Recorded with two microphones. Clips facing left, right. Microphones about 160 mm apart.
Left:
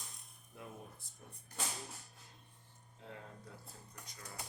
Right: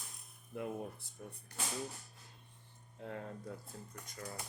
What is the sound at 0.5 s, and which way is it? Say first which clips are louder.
Speech: right 11 dB; 65° right (ahead or behind).